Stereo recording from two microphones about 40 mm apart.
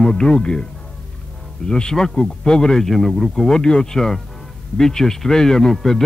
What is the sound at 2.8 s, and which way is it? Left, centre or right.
A man's voice, centre.